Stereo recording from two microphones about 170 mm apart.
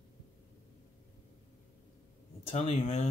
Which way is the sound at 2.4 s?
35° left (ahead or behind).